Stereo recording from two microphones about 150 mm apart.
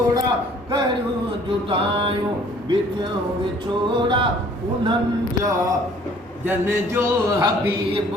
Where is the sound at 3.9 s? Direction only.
30° right (ahead or behind).